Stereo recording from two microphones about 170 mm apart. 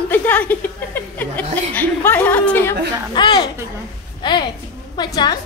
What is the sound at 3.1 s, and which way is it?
A woman's voice, 25° left (ahead or behind).